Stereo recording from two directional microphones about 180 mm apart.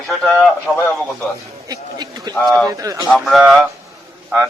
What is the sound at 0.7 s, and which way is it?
Speech, 10° left (ahead or behind).